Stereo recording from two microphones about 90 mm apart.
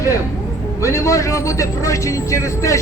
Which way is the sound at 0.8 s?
35° left (ahead or behind).